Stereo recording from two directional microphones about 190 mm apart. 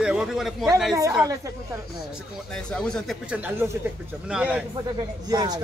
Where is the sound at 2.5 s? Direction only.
5° left (ahead or behind).